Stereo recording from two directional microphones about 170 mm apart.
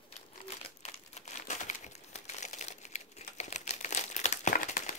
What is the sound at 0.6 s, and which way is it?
Crumpling, 35° left (ahead or behind).